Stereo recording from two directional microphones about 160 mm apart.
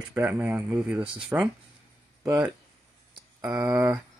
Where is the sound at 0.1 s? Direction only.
10° right (ahead or behind).